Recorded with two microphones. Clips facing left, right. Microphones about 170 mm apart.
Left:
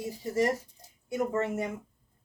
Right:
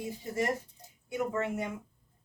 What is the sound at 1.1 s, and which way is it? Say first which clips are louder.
Speech: left 3 dB; 40° left (ahead or behind).